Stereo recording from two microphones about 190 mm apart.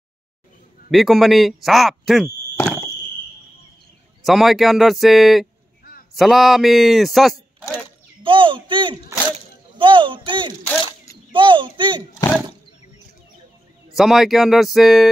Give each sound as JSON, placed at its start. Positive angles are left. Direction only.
{"t": 0.9, "sound": "speech", "side_deg": 0}
{"t": 2.6, "sound": "fireworks", "side_deg": 15}
{"t": 4.2, "sound": "speech", "side_deg": 0}
{"t": 8.2, "sound": "a child's voice", "side_deg": -25}
{"t": 12.2, "sound": "a sound", "side_deg": 15}
{"t": 13.9, "sound": "speech", "side_deg": 0}